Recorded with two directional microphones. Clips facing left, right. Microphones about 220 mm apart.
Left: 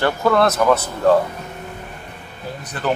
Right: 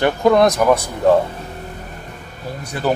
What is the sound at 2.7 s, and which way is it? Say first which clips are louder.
Speech: right 3 dB; 10° right (ahead or behind).